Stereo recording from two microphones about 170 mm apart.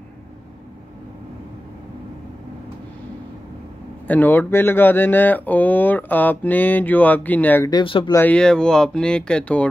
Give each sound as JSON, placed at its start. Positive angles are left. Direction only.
{"t": 4.1, "sound": "speech", "side_deg": 10}
{"t": 7.7, "sound": "speech", "side_deg": 30}
{"t": 8.1, "sound": "speech", "side_deg": 10}